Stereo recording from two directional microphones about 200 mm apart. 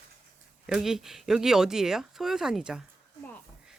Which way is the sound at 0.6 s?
5° right (ahead or behind).